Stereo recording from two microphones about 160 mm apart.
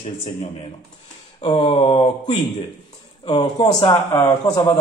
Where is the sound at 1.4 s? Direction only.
30° left (ahead or behind).